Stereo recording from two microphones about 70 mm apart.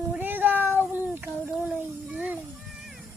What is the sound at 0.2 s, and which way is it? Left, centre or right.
Cat, right.